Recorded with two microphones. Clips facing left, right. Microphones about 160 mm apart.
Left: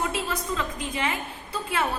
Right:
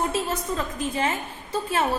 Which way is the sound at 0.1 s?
40° right (ahead or behind).